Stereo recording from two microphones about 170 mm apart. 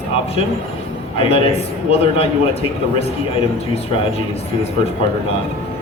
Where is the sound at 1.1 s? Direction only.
35° left (ahead or behind).